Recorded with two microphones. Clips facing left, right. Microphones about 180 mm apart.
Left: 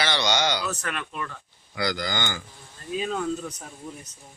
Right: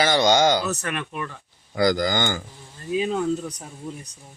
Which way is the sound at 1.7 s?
45° right (ahead or behind).